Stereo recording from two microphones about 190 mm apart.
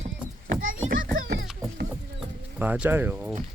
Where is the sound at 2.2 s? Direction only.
10° right (ahead or behind).